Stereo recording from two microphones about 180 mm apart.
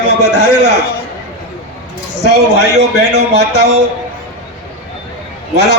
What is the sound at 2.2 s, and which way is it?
A man's voice, 70° right (ahead or behind).